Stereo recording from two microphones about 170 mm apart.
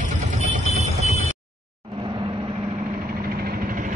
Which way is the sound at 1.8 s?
30° right (ahead or behind).